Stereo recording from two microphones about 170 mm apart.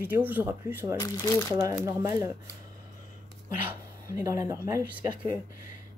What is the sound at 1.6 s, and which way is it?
Speech, 20° right (ahead or behind).